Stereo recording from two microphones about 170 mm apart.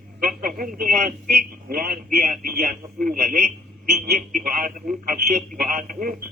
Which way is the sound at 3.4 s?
50° right (ahead or behind).